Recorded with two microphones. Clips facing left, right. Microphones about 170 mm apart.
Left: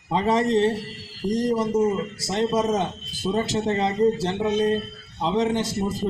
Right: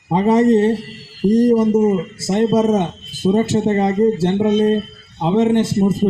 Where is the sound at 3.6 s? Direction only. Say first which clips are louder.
Right 7 dB; 45° right (ahead or behind).